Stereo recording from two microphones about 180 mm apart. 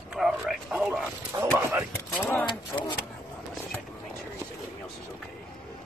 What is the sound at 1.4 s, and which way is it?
Speech, 15° right (ahead or behind).